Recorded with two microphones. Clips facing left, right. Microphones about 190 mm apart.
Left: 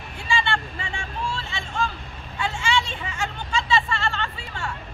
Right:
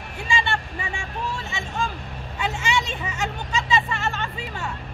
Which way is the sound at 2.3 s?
20° right (ahead or behind).